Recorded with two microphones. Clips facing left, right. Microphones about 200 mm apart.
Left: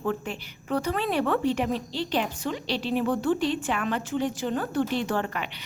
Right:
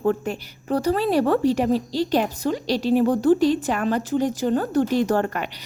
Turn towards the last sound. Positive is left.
turn(degrees=-45)  # may be behind; listen again after turning